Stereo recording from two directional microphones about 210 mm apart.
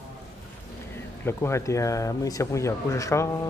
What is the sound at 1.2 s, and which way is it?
Speech, 10° left (ahead or behind).